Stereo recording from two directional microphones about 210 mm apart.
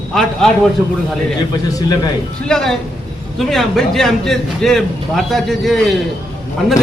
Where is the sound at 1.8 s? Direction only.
20° left (ahead or behind).